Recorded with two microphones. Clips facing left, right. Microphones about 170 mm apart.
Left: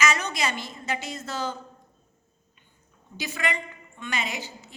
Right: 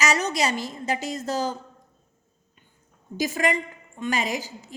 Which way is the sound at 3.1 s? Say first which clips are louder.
Right 6 dB; 40° right (ahead or behind).